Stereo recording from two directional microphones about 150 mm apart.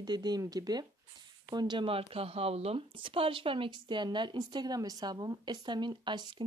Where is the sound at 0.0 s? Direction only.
30° right (ahead or behind).